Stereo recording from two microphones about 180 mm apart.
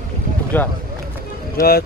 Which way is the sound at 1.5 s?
55° left (ahead or behind).